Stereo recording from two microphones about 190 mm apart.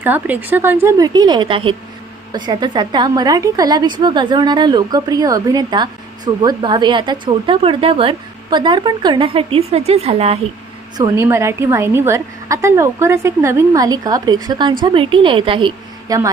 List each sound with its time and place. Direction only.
0.0 s a woman's voice: 10° right (ahead or behind); by 10.3 s 35° right (ahead or behind)
10.9 s a woman's voice: 15° right (ahead or behind)